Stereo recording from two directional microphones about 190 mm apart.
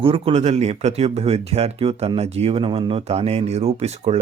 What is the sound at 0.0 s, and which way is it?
Speech, 30° right (ahead or behind).